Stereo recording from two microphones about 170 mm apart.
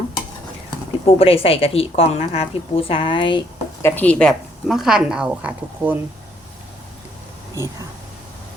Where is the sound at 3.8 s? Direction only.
10° left (ahead or behind); by 6.0 s 10° right (ahead or behind).